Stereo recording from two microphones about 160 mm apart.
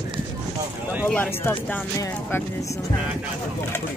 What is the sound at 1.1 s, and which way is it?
Speech, 10° left (ahead or behind).